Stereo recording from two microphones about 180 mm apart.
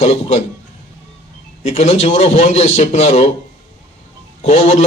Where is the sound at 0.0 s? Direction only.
35° left (ahead or behind).